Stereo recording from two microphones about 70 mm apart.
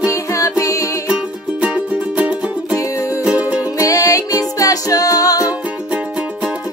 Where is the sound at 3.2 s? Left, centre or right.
Centre.